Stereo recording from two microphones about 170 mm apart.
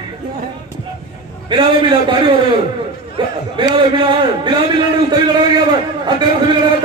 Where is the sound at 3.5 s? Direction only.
30° right (ahead or behind).